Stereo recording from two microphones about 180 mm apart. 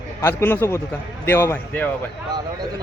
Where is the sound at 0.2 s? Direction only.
15° left (ahead or behind).